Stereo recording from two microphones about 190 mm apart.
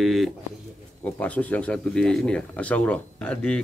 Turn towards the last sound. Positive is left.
turn(degrees=5)  # may be behind; listen again after turning